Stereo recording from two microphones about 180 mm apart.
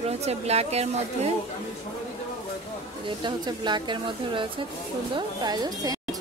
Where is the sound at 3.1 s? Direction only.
25° right (ahead or behind).